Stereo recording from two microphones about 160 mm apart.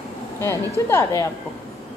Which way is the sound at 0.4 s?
15° left (ahead or behind).